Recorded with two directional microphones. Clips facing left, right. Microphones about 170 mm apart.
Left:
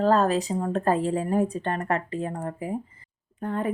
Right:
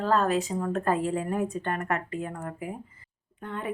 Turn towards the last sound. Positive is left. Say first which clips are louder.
# left 7 dB
turn(degrees=40)  # may be behind; listen again after turning